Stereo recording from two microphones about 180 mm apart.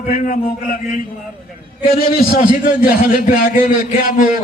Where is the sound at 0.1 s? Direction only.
45° left (ahead or behind).